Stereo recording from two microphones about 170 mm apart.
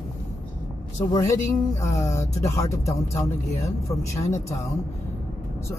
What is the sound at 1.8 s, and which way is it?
Speech, 15° left (ahead or behind).